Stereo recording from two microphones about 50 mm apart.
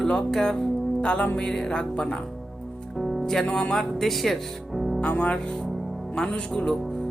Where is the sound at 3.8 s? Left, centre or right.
Centre.